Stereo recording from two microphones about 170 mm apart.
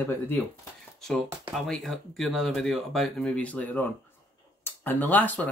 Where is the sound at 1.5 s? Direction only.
Centre (ahead or behind).